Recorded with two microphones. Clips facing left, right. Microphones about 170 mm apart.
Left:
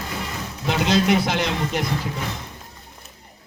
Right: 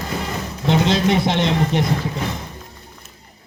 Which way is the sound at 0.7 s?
25° right (ahead or behind).